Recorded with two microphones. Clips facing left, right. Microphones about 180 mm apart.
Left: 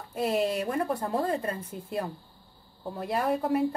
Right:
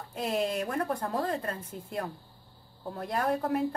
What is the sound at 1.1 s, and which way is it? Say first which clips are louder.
Speech: left 3 dB; 10° left (ahead or behind).